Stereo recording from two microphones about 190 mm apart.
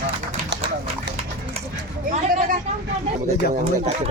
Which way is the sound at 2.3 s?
45° right (ahead or behind).